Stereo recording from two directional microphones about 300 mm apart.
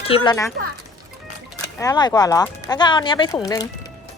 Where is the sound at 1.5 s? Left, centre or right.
Centre.